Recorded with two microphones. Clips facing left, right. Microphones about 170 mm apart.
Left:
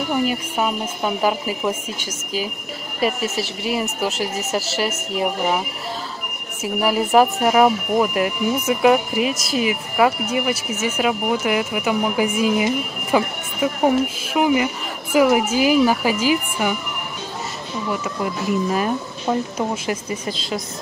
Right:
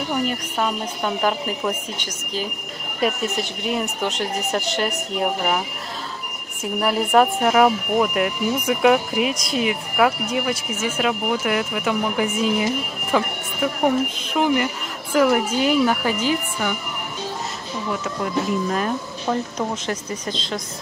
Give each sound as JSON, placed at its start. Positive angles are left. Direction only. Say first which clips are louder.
{"t": 0.1, "sound": "speech", "louder": "left 3 dB", "side_deg": 5}
{"t": 6.6, "sound": "speech", "louder": "left 2 dB", "side_deg": 5}
{"t": 18.2, "sound": "speech", "louder": "even", "side_deg": 5}